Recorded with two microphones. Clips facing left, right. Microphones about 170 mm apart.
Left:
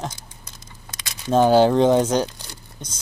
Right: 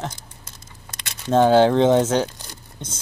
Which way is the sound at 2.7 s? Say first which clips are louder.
Right 4 dB; 25° right (ahead or behind).